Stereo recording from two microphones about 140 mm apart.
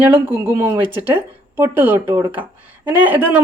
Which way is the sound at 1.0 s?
15° right (ahead or behind).